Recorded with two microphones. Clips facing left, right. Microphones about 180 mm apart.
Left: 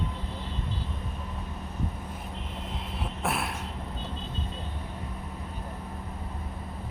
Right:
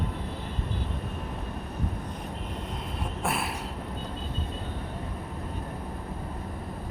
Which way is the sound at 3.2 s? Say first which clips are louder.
Even; centre (ahead or behind).